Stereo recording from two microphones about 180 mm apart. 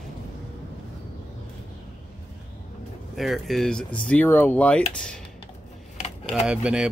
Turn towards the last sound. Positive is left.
turn(degrees=-5)  # may be behind; listen again after turning